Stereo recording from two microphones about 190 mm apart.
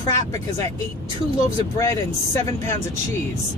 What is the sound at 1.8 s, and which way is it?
Speech, 15° left (ahead or behind).